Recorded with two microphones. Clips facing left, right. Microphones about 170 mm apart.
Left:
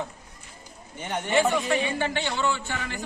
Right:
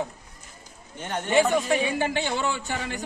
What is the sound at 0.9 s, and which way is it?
Speech, 15° left (ahead or behind).